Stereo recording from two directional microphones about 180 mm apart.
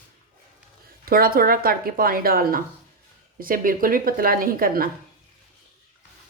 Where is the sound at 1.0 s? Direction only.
55° right (ahead or behind).